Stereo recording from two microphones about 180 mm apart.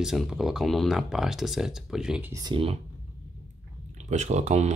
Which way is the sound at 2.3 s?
25° right (ahead or behind).